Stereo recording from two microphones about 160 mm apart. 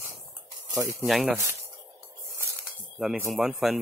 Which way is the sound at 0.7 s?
20° right (ahead or behind).